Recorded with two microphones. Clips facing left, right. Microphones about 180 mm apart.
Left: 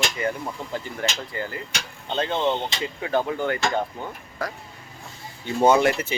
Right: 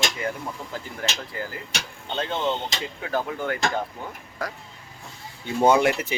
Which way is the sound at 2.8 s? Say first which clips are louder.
Left 5 dB; centre (ahead or behind).